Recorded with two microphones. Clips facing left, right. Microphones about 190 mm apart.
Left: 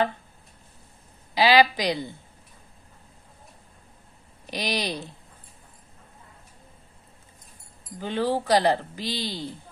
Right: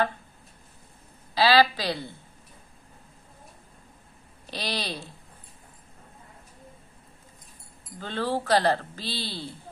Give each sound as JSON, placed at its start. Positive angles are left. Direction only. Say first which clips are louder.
{"t": 1.3, "sound": "speech", "louder": "left 2 dB", "side_deg": 15}
{"t": 4.5, "sound": "speech", "louder": "left 4 dB", "side_deg": 15}
{"t": 8.0, "sound": "speech", "louder": "left 3 dB", "side_deg": 15}